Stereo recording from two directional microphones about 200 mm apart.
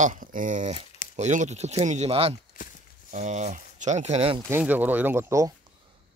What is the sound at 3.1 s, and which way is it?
Speech, 35° right (ahead or behind).